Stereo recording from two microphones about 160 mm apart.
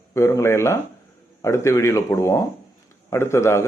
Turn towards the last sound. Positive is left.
turn(degrees=15)  # may be behind; listen again after turning